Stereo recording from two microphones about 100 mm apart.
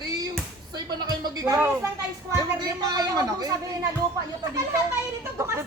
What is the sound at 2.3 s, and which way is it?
Speech, 40° right (ahead or behind).